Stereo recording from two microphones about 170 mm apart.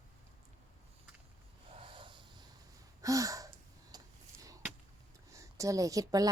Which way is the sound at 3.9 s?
25° right (ahead or behind).